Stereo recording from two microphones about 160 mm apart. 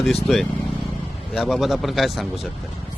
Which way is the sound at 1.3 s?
5° right (ahead or behind).